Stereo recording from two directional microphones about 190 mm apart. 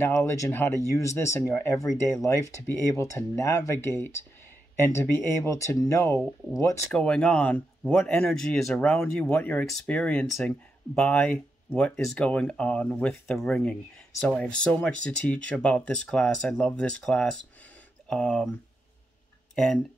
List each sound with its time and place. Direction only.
0.0 s speech: 15° left (ahead or behind)
6.9 s speech: 5° left (ahead or behind)
19.5 s speech: 5° left (ahead or behind)